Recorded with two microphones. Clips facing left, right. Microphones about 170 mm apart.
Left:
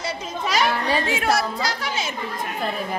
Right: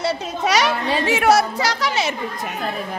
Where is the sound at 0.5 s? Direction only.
85° right.